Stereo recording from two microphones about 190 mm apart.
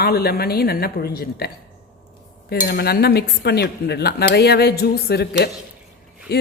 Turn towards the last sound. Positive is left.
turn(degrees=55)  # may be behind; listen again after turning